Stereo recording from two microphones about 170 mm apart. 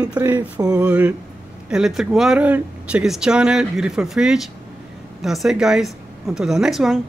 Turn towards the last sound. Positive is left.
turn(degrees=0)  # may be behind; listen again after turning